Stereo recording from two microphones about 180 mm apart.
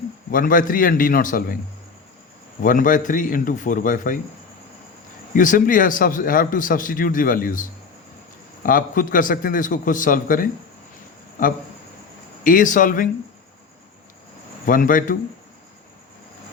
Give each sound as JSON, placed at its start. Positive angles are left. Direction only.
{"t": 0.3, "sound": "a man's voice", "side_deg": 50}
{"t": 2.6, "sound": "a man's voice", "side_deg": 50}
{"t": 5.3, "sound": "a man's voice", "side_deg": 45}
{"t": 14.7, "sound": "a man's voice", "side_deg": 50}